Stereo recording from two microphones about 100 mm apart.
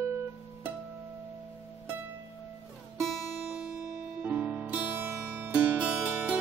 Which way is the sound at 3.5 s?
10° right (ahead or behind).